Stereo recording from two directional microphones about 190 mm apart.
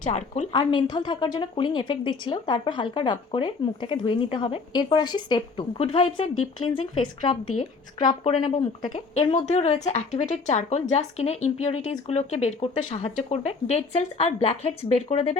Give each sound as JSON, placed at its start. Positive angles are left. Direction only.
{"t": 0.5, "sound": "a woman's voice", "side_deg": 25}